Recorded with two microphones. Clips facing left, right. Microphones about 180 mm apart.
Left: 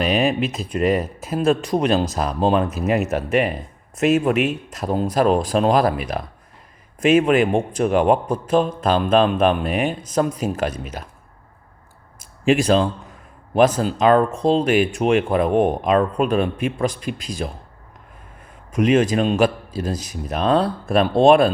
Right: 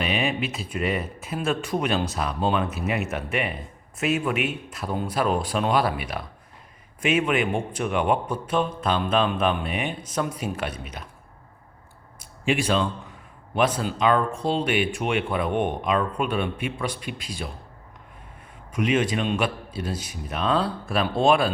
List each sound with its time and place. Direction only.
0.0 s a man's voice: 40° left (ahead or behind)
12.5 s a man's voice: 40° left (ahead or behind)
18.7 s a man's voice: 40° left (ahead or behind)